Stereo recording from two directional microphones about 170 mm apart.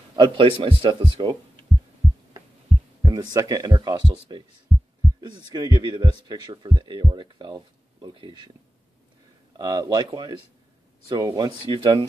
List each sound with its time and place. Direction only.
0.1 s speech: 30° right (ahead or behind)
3.0 s speech: 20° right (ahead or behind)
5.5 s speech: 25° right (ahead or behind)
9.6 s speech: 25° right (ahead or behind)